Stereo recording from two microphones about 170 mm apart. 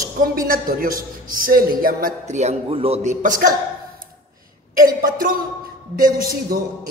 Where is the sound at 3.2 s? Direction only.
50° right (ahead or behind).